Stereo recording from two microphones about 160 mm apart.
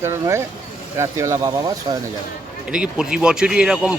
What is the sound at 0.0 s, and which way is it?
Speech, 15° right (ahead or behind).